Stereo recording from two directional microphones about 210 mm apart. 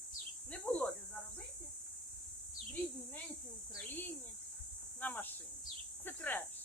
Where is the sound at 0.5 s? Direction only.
5° left (ahead or behind).